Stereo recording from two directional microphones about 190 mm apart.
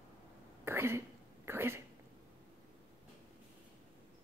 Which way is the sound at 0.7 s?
15° right (ahead or behind).